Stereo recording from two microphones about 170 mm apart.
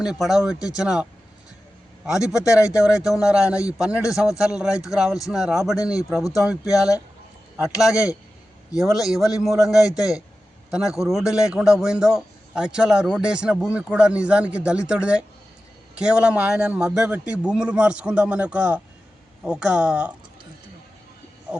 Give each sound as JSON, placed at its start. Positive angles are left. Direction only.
{"t": 0.0, "sound": "a man's voice", "side_deg": 0}
{"t": 2.5, "sound": "a man's voice", "side_deg": -5}
{"t": 6.2, "sound": "speech", "side_deg": 20}
{"t": 7.6, "sound": "a man's voice", "side_deg": -5}
{"t": 9.9, "sound": "speech", "side_deg": 20}
{"t": 10.7, "sound": "a man's voice", "side_deg": -5}